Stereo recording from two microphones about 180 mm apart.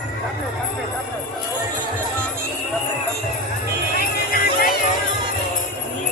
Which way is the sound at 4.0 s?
55° left (ahead or behind).